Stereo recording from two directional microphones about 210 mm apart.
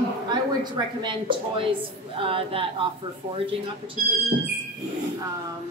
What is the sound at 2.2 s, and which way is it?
Speech, 25° right (ahead or behind).